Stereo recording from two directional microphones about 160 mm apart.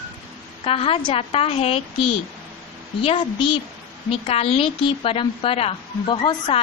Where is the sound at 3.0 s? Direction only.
35° left (ahead or behind).